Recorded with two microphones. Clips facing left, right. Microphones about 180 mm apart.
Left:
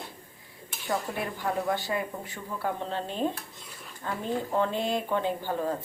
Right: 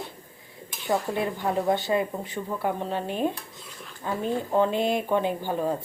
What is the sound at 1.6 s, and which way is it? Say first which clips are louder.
Dishes: right 5 dB; 25° right (ahead or behind).